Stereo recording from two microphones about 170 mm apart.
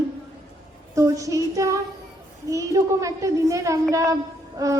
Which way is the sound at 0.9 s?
20° right (ahead or behind).